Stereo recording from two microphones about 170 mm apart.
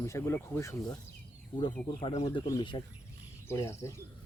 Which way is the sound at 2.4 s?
25° left (ahead or behind).